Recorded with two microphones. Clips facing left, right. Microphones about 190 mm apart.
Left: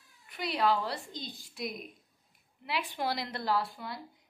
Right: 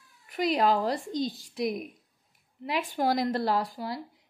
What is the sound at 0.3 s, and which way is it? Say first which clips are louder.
A woman's voice: right 5 dB; 45° right (ahead or behind).